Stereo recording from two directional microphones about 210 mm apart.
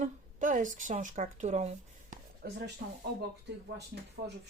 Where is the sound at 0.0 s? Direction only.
35° right (ahead or behind).